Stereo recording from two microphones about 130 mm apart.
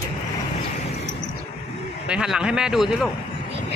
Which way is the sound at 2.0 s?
5° right (ahead or behind).